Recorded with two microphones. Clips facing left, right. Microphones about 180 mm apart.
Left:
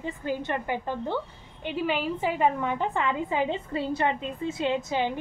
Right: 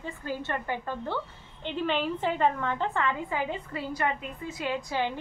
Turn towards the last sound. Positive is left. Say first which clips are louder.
# left 3 dB
turn(degrees=20)  # may be behind; listen again after turning